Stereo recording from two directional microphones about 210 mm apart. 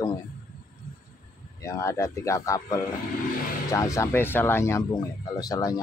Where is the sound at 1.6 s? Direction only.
15° left (ahead or behind).